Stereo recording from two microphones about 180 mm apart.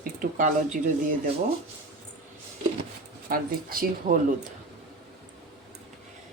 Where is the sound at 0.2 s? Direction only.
45° right (ahead or behind).